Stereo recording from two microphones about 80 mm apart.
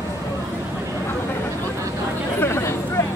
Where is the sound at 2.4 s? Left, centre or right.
Left.